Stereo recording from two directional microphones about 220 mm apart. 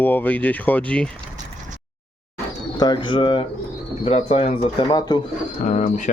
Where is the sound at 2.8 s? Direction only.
20° left (ahead or behind).